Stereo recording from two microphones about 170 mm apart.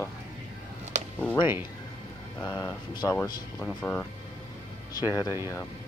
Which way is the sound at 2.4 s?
20° left (ahead or behind).